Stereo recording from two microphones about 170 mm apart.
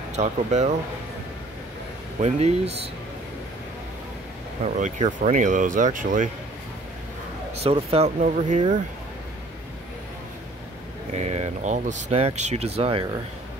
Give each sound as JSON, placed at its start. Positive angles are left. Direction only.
{"t": 0.1, "sound": "speech", "side_deg": -40}
{"t": 2.1, "sound": "speech", "side_deg": -40}
{"t": 4.7, "sound": "speech", "side_deg": -45}
{"t": 7.5, "sound": "speech", "side_deg": -35}
{"t": 11.1, "sound": "speech", "side_deg": -40}